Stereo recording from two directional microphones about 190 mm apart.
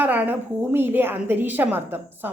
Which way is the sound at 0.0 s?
10° right (ahead or behind).